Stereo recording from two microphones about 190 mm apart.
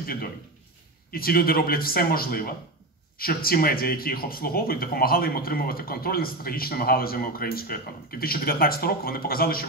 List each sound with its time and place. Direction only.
0.0 s speech: 50° left (ahead or behind)